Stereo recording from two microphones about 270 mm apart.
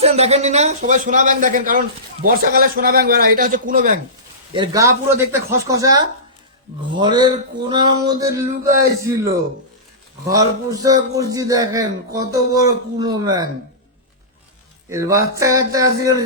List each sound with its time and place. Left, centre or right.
0.0 s a man's voice: right
4.5 s a man's voice: centre
14.8 s a man's voice: centre